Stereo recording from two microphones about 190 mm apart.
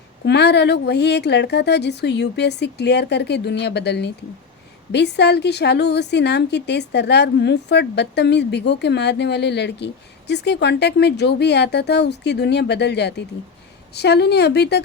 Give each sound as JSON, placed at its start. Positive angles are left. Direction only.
{"t": 0.3, "sound": "a woman's voice", "side_deg": 60}